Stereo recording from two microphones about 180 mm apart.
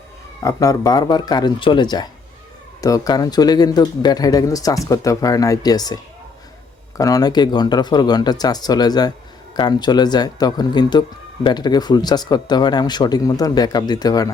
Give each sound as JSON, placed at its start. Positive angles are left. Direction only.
{"t": 0.4, "sound": "speech", "side_deg": 20}